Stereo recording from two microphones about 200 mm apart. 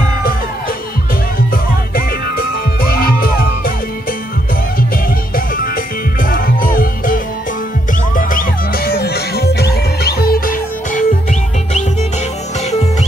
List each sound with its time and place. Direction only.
2.0 s music: 45° left (ahead or behind)
6.3 s music: 45° left (ahead or behind)
8.2 s music: 45° left (ahead or behind)